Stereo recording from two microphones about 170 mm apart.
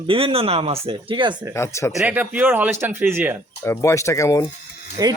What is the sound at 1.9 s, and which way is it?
Speech, 10° right (ahead or behind).